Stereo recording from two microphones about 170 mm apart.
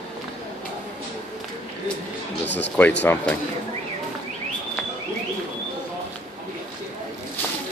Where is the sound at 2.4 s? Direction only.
90° left.